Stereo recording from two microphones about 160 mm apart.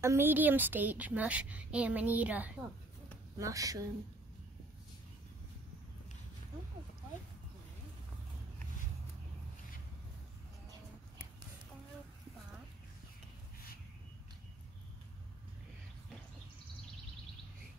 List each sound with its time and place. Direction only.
0.0 s a woman's voice: 15° right (ahead or behind)
3.3 s speech: 20° right (ahead or behind)